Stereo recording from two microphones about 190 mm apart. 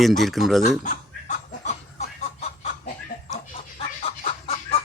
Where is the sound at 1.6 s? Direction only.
35° left (ahead or behind).